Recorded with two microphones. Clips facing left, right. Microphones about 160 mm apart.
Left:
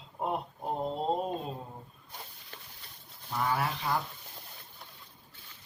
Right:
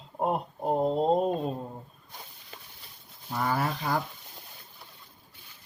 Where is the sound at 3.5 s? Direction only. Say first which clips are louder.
Right 3 dB; 45° right (ahead or behind).